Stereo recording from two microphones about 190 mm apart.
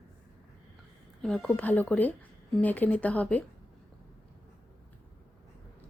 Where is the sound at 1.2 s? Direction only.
5° left (ahead or behind).